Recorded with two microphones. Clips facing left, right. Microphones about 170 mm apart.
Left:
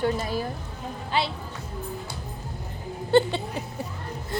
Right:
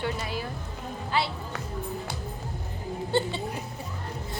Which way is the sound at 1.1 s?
20° left (ahead or behind).